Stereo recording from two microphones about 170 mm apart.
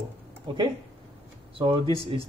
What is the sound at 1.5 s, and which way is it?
Speech, 30° right (ahead or behind).